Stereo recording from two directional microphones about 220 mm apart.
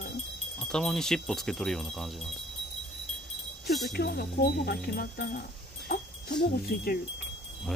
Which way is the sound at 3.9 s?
45° left (ahead or behind).